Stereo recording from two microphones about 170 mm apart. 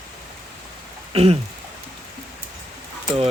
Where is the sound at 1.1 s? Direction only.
35° right (ahead or behind).